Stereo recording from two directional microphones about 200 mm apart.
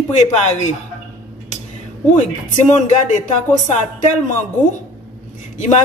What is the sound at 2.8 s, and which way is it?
Speech, 40° left (ahead or behind).